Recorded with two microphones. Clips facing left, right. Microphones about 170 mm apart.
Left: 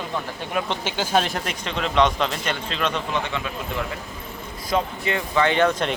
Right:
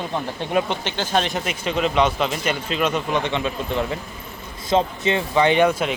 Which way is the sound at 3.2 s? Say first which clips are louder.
Right 5 dB; 25° right (ahead or behind).